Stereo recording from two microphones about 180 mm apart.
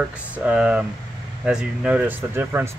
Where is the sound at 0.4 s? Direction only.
5° right (ahead or behind).